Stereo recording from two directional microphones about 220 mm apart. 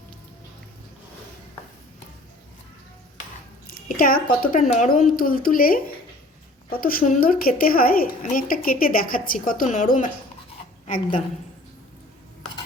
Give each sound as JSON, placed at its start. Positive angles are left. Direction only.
{"t": 3.8, "sound": "a woman's voice", "side_deg": 40}